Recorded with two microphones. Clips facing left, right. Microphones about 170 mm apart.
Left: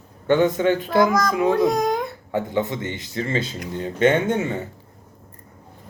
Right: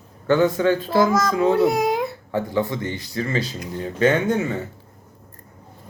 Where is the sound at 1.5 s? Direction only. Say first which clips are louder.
Right 1 dB; 5° right (ahead or behind).